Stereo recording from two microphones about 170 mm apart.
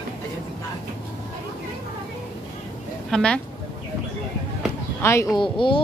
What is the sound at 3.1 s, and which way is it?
Speech, 5° left (ahead or behind).